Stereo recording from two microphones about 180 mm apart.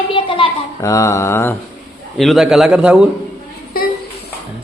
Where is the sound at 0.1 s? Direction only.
30° left (ahead or behind).